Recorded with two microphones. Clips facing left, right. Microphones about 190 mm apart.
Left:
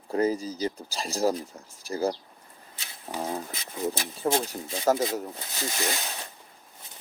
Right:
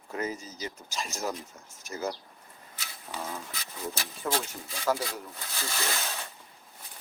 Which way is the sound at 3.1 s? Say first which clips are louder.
Left 6 dB; 35° left (ahead or behind).